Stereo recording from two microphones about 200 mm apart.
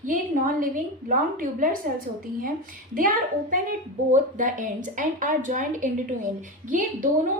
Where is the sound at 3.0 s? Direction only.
45° right (ahead or behind).